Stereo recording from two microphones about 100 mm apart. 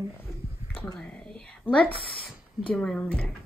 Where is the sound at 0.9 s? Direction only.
5° left (ahead or behind).